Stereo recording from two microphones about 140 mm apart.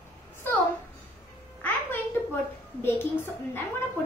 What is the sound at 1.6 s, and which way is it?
A child's voice, 15° left (ahead or behind).